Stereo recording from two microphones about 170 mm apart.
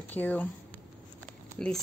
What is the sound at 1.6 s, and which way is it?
Speech, 5° left (ahead or behind).